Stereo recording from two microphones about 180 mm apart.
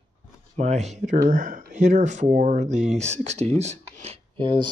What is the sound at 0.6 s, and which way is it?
Speech, 40° right (ahead or behind).